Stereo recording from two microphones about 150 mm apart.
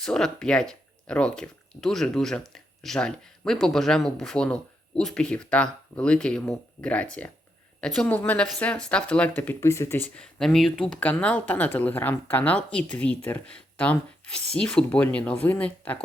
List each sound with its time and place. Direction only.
0.0 s speech: 5° left (ahead or behind)
10.2 s speech: 5° left (ahead or behind)